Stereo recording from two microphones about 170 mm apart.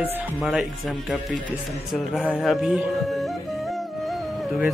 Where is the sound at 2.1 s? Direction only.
Centre (ahead or behind).